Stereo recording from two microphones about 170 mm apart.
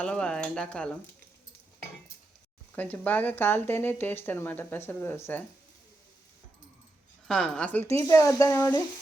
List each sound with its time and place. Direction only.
0.0 s speech: 5° left (ahead or behind)
2.7 s speech: 10° left (ahead or behind)
7.3 s speech: 5° left (ahead or behind)